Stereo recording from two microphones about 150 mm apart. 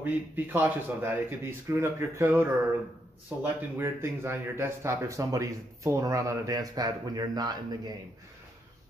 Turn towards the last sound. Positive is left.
turn(degrees=-25)  # may be behind; listen again after turning